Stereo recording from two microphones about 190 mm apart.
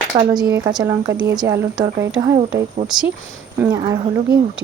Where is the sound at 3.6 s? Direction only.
15° right (ahead or behind).